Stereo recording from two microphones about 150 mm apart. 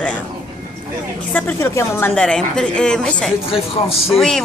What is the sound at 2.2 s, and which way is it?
A woman's voice, 5° left (ahead or behind).